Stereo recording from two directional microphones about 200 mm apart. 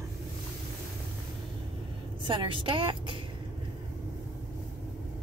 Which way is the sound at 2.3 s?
25° right (ahead or behind).